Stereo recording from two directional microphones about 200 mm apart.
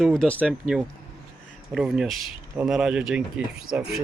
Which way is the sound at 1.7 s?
Centre (ahead or behind).